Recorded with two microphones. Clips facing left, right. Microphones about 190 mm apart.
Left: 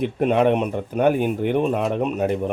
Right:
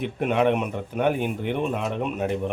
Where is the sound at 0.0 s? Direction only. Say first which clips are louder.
Left 4 dB; 35° left (ahead or behind).